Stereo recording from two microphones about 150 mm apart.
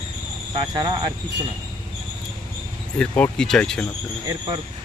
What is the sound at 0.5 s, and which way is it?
Speech, 30° right (ahead or behind).